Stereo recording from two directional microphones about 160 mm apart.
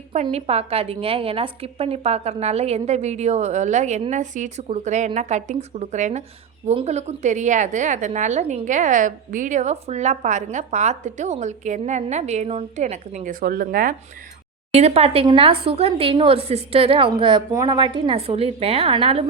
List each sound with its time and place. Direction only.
0.1 s a woman's voice: 45° right (ahead or behind)
13.4 s speech: 65° right (ahead or behind)
14.7 s a woman's voice: 40° right (ahead or behind)
17.5 s a woman's voice: 20° right (ahead or behind)
17.7 s a woman's voice: 30° right (ahead or behind)